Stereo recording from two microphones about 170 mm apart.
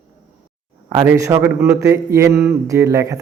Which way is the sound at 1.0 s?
15° right (ahead or behind).